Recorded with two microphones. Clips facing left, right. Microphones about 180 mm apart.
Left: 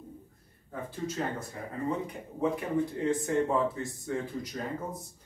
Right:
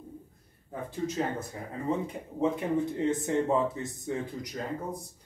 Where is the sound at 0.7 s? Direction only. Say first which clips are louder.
Right 2 dB; 20° right (ahead or behind).